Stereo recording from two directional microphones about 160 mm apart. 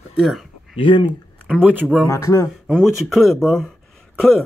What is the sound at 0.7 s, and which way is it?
Speech, 30° left (ahead or behind).